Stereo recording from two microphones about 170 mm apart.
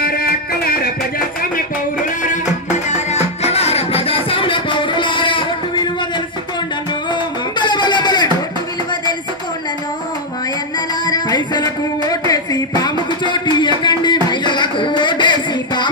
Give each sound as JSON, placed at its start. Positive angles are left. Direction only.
{"t": 0.0, "sound": "music", "side_deg": 65}
{"t": 2.9, "sound": "music", "side_deg": 40}
{"t": 7.1, "sound": "a sound", "side_deg": 25}
{"t": 11.1, "sound": "music", "side_deg": 25}